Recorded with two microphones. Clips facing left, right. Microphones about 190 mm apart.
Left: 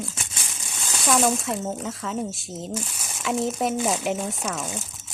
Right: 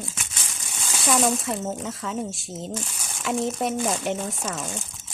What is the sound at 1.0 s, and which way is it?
Speech, centre (ahead or behind).